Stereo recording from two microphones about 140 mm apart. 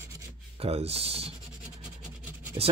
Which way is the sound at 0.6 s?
45° right (ahead or behind).